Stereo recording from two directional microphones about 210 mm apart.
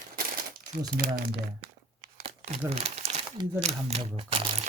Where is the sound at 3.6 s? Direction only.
30° right (ahead or behind).